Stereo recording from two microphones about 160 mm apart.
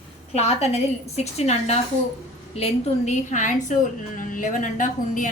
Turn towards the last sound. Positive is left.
turn(degrees=55)  # may be behind; listen again after turning